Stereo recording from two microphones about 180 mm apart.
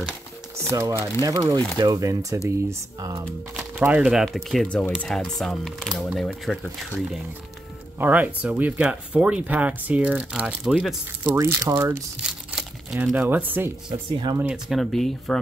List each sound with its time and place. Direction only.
0.6 s speech: 15° right (ahead or behind)
3.5 s speech: 10° right (ahead or behind)
8.0 s speech: 10° right (ahead or behind)
11.3 s speech: 15° right (ahead or behind)
13.8 s speech: 20° right (ahead or behind)
14.5 s speech: centre (ahead or behind)